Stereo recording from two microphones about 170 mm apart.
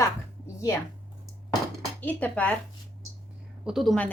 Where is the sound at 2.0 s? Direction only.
10° left (ahead or behind).